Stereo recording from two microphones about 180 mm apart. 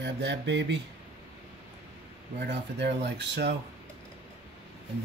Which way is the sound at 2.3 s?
70° right (ahead or behind).